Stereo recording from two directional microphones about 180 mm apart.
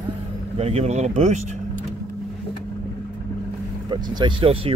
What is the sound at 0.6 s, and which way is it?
Speech, 35° right (ahead or behind).